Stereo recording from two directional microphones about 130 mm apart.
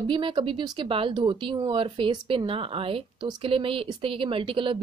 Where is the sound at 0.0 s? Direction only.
40° right (ahead or behind).